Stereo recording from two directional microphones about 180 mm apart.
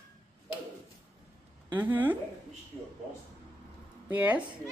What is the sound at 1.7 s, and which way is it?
Speech, 10° right (ahead or behind).